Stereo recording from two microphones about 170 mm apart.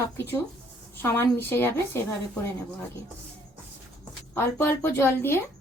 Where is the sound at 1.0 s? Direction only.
15° left (ahead or behind).